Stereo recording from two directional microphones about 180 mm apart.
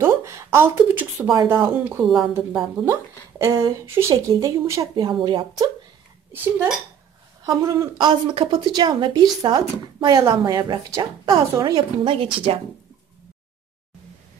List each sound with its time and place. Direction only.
0.0 s speech: 15° right (ahead or behind)
2.0 s a woman's voice: centre (ahead or behind)
2.8 s a woman's voice: 15° right (ahead or behind)
6.3 s a woman's voice: 10° right (ahead or behind); by 12.5 s 30° right (ahead or behind)